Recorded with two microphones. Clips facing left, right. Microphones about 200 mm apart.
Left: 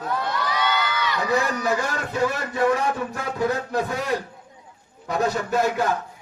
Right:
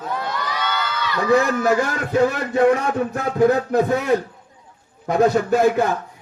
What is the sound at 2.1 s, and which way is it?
A man's voice, 50° right (ahead or behind).